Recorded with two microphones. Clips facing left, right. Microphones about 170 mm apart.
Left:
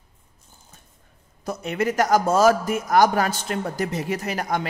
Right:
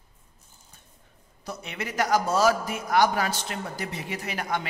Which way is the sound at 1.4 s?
45° left (ahead or behind).